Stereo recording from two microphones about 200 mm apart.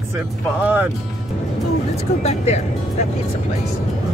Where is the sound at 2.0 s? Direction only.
35° left (ahead or behind).